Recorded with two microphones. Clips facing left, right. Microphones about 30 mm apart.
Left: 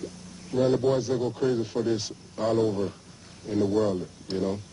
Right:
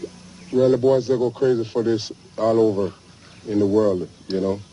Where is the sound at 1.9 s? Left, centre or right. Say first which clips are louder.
Right 6 dB; right.